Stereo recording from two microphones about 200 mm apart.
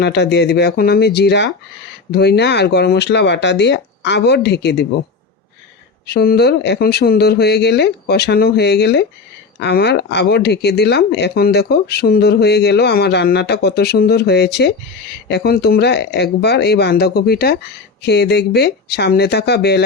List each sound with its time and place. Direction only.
0.0 s speech: 55° left (ahead or behind)
6.1 s speech: 55° left (ahead or behind)